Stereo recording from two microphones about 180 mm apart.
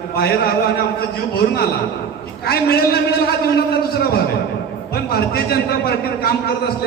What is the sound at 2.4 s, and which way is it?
A man's voice, 60° left (ahead or behind).